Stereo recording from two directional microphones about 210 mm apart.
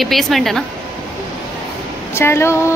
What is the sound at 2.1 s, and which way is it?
Speech, 10° left (ahead or behind).